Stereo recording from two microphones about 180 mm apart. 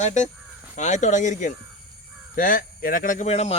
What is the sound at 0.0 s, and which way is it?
Speech, 40° left (ahead or behind).